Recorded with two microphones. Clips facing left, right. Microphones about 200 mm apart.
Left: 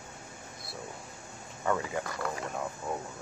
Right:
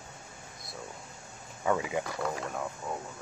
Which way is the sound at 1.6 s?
10° right (ahead or behind).